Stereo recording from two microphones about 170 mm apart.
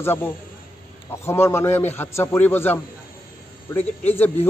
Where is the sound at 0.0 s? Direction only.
15° left (ahead or behind).